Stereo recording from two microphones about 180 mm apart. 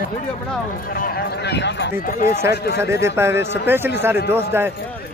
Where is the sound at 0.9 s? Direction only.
55° left (ahead or behind); by 1.9 s 70° left (ahead or behind).